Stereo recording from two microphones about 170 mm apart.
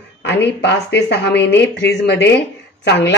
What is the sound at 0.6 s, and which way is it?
Speech, 85° left.